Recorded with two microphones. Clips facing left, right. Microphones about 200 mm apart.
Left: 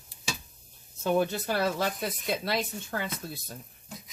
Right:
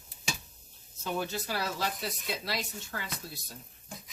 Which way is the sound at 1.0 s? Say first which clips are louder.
Left 8 dB; 55° left (ahead or behind).